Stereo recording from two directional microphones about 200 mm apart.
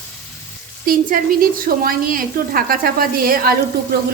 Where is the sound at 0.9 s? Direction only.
45° right (ahead or behind).